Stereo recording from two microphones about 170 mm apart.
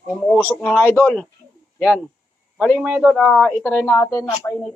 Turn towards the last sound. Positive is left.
turn(degrees=20)  # may be behind; listen again after turning